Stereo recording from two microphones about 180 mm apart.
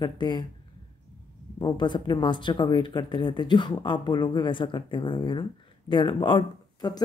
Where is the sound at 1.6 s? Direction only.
25° left (ahead or behind).